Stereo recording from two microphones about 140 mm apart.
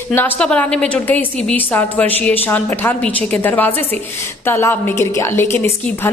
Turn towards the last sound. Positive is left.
turn(degrees=15)  # may be behind; listen again after turning